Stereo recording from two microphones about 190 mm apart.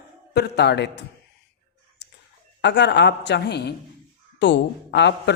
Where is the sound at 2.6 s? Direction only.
65° left (ahead or behind).